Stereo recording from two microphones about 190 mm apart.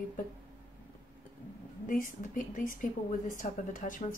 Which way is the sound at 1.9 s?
45° left (ahead or behind).